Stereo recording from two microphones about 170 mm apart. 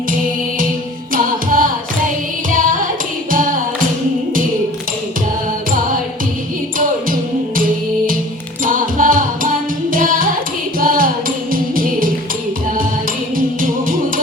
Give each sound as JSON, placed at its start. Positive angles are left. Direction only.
{"t": 1.1, "sound": "carnatic music", "side_deg": -55}
{"t": 2.5, "sound": "music", "side_deg": -55}
{"t": 6.7, "sound": "music", "side_deg": -55}
{"t": 13.3, "sound": "music", "side_deg": -55}